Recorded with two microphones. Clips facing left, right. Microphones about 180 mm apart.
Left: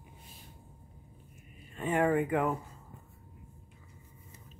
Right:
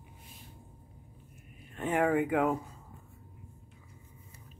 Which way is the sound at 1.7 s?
5° right (ahead or behind).